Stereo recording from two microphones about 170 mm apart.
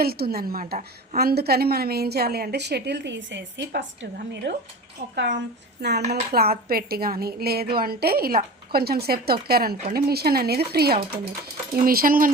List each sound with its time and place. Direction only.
0.0 s a woman's voice: 65° right (ahead or behind); by 4.6 s 90° right
5.0 s speech: 35° right (ahead or behind)
6.3 s a woman's voice: 65° right (ahead or behind)